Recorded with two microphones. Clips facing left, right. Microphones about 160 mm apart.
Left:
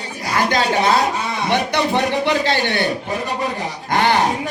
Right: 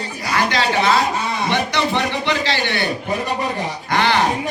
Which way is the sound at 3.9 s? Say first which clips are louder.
Left 2 dB; 45° left (ahead or behind).